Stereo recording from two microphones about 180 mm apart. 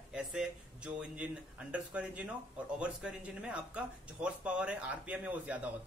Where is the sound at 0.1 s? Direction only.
5° right (ahead or behind).